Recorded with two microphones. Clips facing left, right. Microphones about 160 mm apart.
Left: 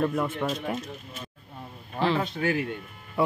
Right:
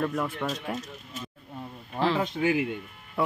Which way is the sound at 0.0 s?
5° left (ahead or behind).